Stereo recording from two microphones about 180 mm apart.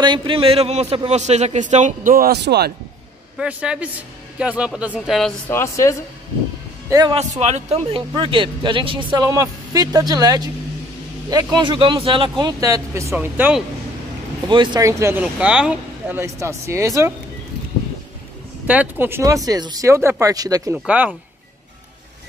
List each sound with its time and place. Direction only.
0.0 s a man's voice: 25° right (ahead or behind); by 2.7 s 65° right (ahead or behind)
3.3 s speech: 5° right (ahead or behind)
5.5 s a woman's voice: 15° left (ahead or behind)
6.9 s speech: 20° right (ahead or behind)
7.2 s speech: 35° right (ahead or behind); by 13.6 s 10° right (ahead or behind)
14.5 s speech: 25° right (ahead or behind)
18.7 s speech: 10° right (ahead or behind)
20.7 s speech: 10° right (ahead or behind)